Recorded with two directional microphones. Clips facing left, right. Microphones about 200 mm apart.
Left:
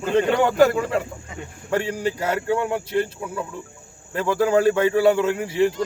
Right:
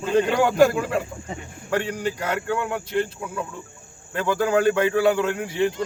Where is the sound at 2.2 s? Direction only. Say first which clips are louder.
Left 3 dB; 5° left (ahead or behind).